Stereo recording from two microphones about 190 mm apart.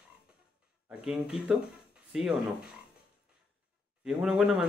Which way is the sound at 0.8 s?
5° right (ahead or behind).